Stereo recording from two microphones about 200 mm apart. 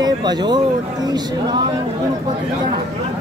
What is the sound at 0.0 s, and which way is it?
A woman's voice, 20° right (ahead or behind).